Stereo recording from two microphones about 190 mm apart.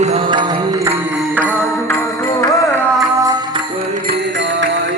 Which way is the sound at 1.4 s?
10° left (ahead or behind).